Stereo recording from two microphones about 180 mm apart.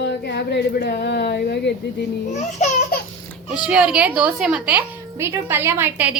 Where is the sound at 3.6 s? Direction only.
5° right (ahead or behind).